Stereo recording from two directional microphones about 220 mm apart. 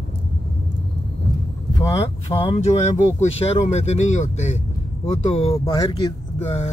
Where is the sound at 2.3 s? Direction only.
15° left (ahead or behind).